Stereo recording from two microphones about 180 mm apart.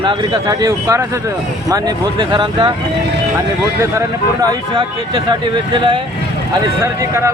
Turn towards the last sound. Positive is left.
turn(degrees=-15)  # may be behind; listen again after turning